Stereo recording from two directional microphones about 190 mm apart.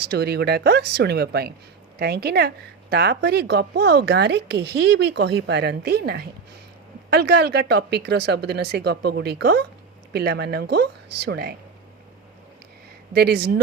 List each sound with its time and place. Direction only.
0.0 s speech: 60° right (ahead or behind)
13.1 s speech: 60° right (ahead or behind)